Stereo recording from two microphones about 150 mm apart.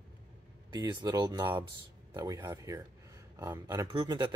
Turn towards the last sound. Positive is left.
turn(degrees=-30)  # may be behind; listen again after turning